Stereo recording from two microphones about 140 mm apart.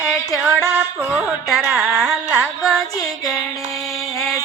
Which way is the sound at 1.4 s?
Centre (ahead or behind).